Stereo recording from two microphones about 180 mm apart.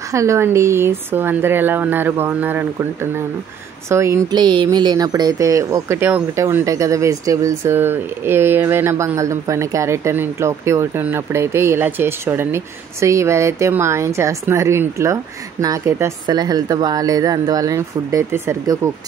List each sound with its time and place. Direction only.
0.1 s speech: 15° right (ahead or behind)